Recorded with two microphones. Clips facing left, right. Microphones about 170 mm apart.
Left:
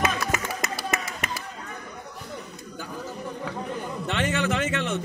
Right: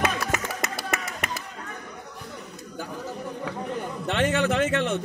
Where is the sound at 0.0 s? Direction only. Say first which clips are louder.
Even; 55° right (ahead or behind).